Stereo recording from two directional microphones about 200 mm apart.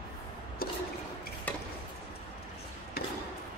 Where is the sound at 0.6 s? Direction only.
50° left (ahead or behind).